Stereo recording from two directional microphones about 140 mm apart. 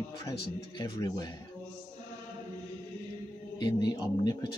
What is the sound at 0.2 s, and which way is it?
A man's voice, 25° left (ahead or behind).